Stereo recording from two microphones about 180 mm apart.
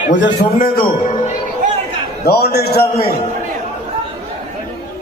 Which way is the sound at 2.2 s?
60° left (ahead or behind).